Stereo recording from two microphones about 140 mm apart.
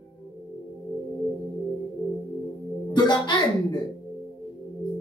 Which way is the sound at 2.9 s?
30° left (ahead or behind).